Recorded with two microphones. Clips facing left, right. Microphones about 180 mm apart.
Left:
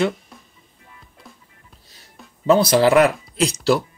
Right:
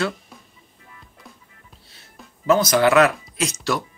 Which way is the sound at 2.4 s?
30° left (ahead or behind).